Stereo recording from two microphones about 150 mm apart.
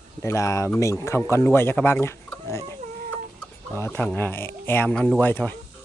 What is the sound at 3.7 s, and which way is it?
Speech, 15° left (ahead or behind).